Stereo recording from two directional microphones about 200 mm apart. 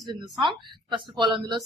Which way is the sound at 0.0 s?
20° right (ahead or behind).